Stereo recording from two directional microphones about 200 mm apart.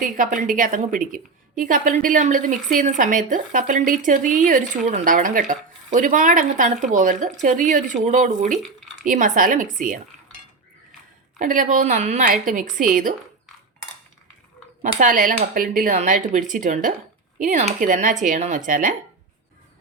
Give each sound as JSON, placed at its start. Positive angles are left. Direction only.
{"t": 0.0, "sound": "a woman's voice", "side_deg": -40}
{"t": 11.3, "sound": "a woman's voice", "side_deg": -40}
{"t": 14.8, "sound": "a woman's voice", "side_deg": -40}